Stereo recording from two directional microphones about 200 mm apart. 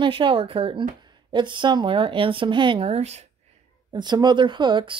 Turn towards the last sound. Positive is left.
turn(degrees=-25)  # may be behind; listen again after turning